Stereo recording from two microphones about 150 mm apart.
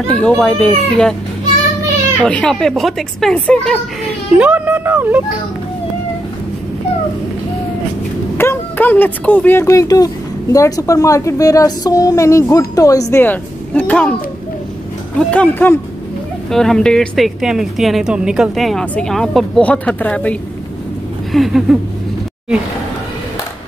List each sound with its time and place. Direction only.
0.1 s a child's voice: 10° left (ahead or behind)
2.2 s a woman's voice: 5° left (ahead or behind)
4.4 s speech: 10° right (ahead or behind)
8.4 s speech: 15° left (ahead or behind)
13.1 s speech: 10° left (ahead or behind)
15.1 s a child's voice: 10° left (ahead or behind)
21.3 s a woman's voice: centre (ahead or behind)